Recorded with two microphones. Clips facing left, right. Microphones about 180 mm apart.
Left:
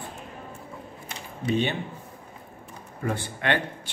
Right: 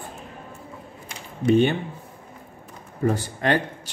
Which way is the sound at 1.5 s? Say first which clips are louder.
Right 7 dB; 50° right (ahead or behind).